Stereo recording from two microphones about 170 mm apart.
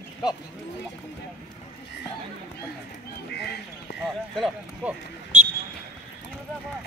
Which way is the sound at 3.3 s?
80° left.